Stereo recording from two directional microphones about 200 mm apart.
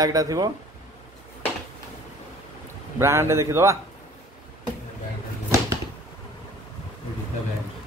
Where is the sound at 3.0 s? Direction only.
15° right (ahead or behind).